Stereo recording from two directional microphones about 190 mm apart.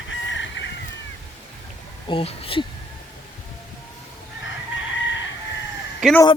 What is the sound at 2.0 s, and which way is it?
Speech, 30° left (ahead or behind).